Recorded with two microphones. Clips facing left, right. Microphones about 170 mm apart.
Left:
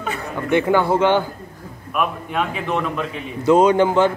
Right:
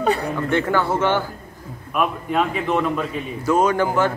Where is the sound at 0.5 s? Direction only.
15° left (ahead or behind).